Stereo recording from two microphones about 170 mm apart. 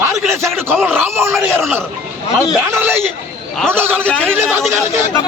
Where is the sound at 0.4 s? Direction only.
10° right (ahead or behind).